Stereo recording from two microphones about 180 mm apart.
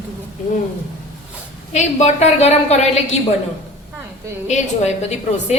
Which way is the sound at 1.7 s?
40° left (ahead or behind).